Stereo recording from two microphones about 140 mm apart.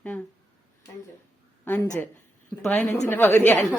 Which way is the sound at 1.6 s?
15° left (ahead or behind).